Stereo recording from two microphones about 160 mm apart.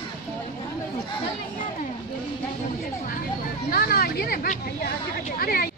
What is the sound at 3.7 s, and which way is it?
Speech, 75° left (ahead or behind).